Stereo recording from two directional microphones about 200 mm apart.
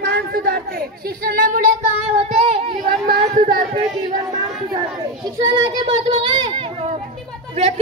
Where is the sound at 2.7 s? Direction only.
45° right (ahead or behind).